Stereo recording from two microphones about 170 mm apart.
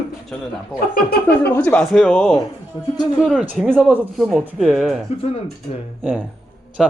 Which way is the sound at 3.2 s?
Centre (ahead or behind).